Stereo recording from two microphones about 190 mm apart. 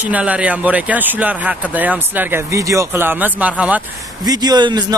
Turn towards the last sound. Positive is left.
turn(degrees=-20)  # may be behind; listen again after turning